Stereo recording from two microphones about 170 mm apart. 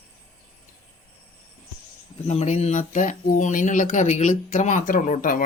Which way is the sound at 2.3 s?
40° left (ahead or behind).